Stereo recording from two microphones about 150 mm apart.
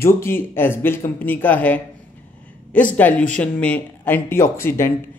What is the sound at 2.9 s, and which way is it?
A man's voice, 10° left (ahead or behind).